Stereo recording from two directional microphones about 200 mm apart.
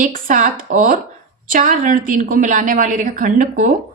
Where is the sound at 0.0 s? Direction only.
40° right (ahead or behind).